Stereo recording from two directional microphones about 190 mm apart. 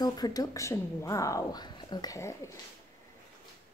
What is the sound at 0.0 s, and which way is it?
Speech, 20° left (ahead or behind).